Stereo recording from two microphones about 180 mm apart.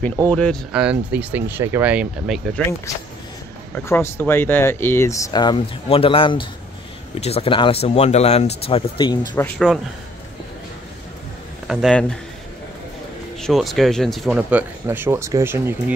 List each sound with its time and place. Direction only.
0.3 s speech: 5° left (ahead or behind)
0.7 s speech: 5° right (ahead or behind)
3.7 s speech: 15° left (ahead or behind)
9.3 s speech: 10° left (ahead or behind)
11.6 s speech: centre (ahead or behind)
13.4 s speech: centre (ahead or behind)